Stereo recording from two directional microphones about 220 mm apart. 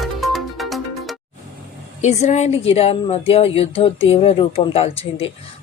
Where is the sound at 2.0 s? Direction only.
30° left (ahead or behind).